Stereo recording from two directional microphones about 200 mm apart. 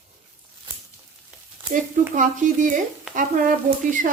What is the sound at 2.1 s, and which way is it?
Speech, 40° right (ahead or behind).